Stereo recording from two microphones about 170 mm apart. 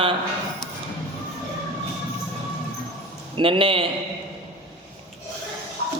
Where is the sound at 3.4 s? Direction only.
30° right (ahead or behind).